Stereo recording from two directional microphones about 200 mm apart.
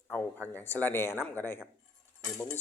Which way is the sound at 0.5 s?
10° left (ahead or behind).